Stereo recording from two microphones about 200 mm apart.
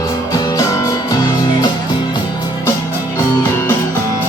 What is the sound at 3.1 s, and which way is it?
Music, 10° left (ahead or behind).